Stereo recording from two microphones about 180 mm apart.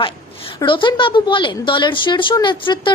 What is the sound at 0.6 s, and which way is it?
A woman's voice, 25° left (ahead or behind).